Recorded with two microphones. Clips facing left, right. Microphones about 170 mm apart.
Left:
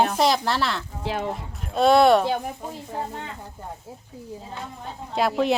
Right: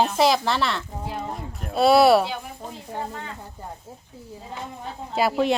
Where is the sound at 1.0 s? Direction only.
90° left.